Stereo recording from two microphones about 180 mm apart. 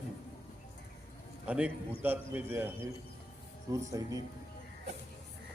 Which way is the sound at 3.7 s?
20° right (ahead or behind).